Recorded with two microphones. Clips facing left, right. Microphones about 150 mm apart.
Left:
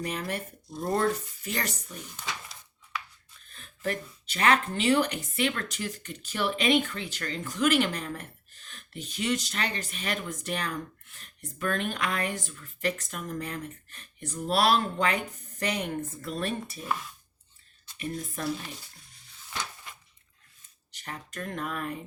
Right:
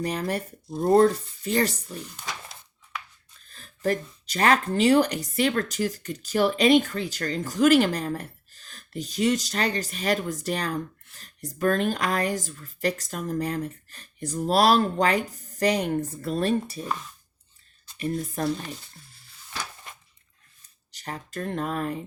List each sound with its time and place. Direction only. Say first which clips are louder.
0.0 s speech: right 5 dB; 35° right (ahead or behind)
3.5 s speech: right 6 dB; 35° right (ahead or behind)
17.9 s speech: right 6 dB; 35° right (ahead or behind)
20.9 s speech: right 5 dB; 35° right (ahead or behind)